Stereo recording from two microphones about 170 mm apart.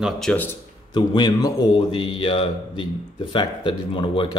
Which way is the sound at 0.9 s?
25° left (ahead or behind).